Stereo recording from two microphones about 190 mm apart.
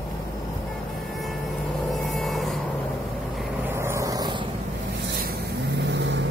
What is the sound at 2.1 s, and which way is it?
Vehicle, centre (ahead or behind).